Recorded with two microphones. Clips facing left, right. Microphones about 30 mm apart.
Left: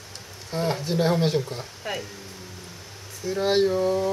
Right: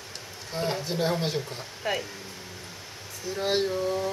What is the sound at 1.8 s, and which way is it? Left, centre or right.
Speech, centre.